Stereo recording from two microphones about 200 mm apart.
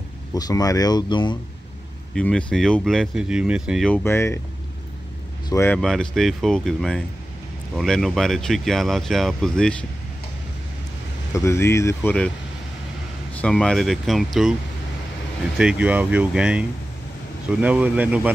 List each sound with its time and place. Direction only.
0.3 s speech: 20° left (ahead or behind)
2.1 s speech: 5° left (ahead or behind)
3.9 s speech: 10° left (ahead or behind)
5.5 s speech: 15° left (ahead or behind)
5.8 s speech: centre (ahead or behind)
11.3 s speech: 15° left (ahead or behind)
13.3 s speech: 5° left (ahead or behind)
15.5 s speech: 5° right (ahead or behind)